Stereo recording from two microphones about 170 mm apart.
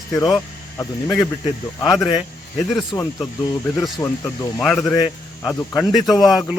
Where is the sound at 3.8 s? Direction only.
15° left (ahead or behind).